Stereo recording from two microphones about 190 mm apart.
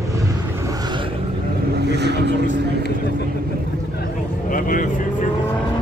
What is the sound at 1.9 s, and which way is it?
Vehicle, 60° right (ahead or behind).